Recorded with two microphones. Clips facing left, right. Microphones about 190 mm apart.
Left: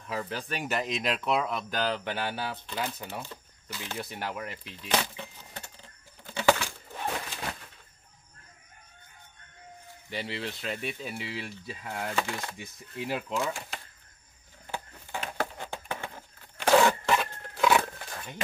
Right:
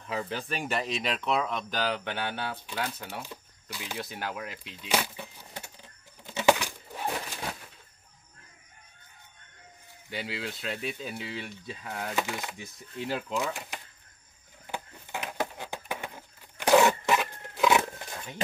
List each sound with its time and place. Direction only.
0.1 s speech: centre (ahead or behind)
3.7 s speech: 10° right (ahead or behind)
4.0 s a sound: centre (ahead or behind)
10.0 s speech: centre (ahead or behind)
12.2 s speech: 15° right (ahead or behind)
12.5 s speech: centre (ahead or behind)
13.3 s speech: 15° right (ahead or behind)
14.7 s a sound: 15° right (ahead or behind)
17.6 s roaring cats: 20° right (ahead or behind)
18.1 s a sound: 10° right (ahead or behind)